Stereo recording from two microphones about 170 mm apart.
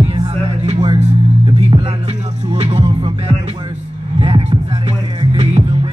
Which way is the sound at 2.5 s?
40° right (ahead or behind).